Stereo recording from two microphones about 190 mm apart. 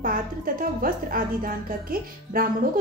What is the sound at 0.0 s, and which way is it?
Speech, 50° right (ahead or behind).